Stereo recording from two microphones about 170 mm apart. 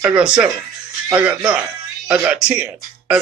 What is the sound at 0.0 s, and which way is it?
Speech, 5° right (ahead or behind).